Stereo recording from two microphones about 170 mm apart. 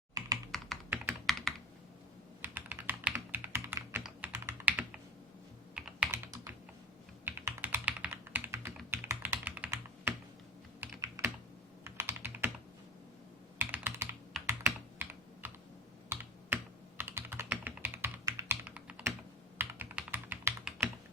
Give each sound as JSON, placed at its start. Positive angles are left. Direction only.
{"t": 0.5, "sound": "computer keyboard", "side_deg": 5}
{"t": 0.9, "sound": "computer keyboard", "side_deg": -10}
{"t": 1.3, "sound": "computer keyboard", "side_deg": 0}
{"t": 2.4, "sound": "computer keyboard", "side_deg": -10}
{"t": 6.3, "sound": "computer keyboard", "side_deg": -20}
{"t": 7.3, "sound": "typing", "side_deg": -15}
{"t": 8.9, "sound": "computer keyboard", "side_deg": -10}
{"t": 10.8, "sound": "typing", "side_deg": -15}
{"t": 11.9, "sound": "computer keyboard", "side_deg": -15}
{"t": 13.6, "sound": "computer keyboard", "side_deg": -10}